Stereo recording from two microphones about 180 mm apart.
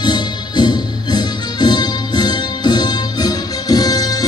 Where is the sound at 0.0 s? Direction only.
25° left (ahead or behind).